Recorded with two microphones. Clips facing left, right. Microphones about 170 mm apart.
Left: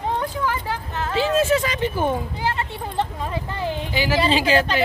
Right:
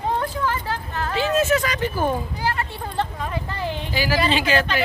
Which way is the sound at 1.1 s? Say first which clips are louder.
Left 1 dB; 30° left (ahead or behind).